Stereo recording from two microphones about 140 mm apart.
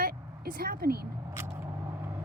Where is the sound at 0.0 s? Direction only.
90° right.